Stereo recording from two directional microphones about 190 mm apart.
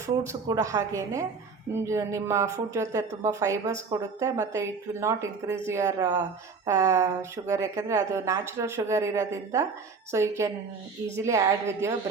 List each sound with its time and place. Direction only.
0.3 s a woman's voice: 20° right (ahead or behind)